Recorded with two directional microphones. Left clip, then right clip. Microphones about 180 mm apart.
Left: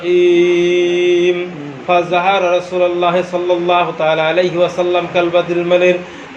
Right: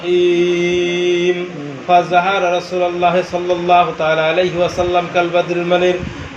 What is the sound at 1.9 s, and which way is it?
A man's voice, 25° left (ahead or behind).